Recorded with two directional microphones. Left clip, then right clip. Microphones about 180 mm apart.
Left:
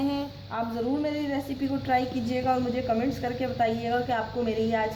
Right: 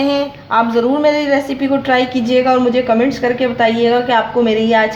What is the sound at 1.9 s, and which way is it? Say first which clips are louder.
A woman's voice: right 12 dB; 35° right (ahead or behind).